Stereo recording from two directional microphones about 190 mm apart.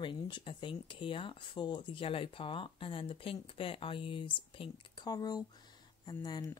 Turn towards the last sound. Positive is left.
turn(degrees=20)  # may be behind; listen again after turning